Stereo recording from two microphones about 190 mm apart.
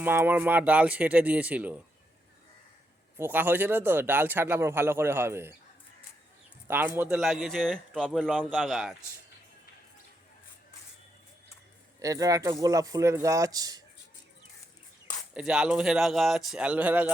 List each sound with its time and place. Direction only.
0.0 s speech: 10° right (ahead or behind)
3.2 s speech: 10° right (ahead or behind)
6.7 s a man's voice: 10° right (ahead or behind)
11.9 s speech: 15° right (ahead or behind)
15.3 s a man's voice: 5° right (ahead or behind)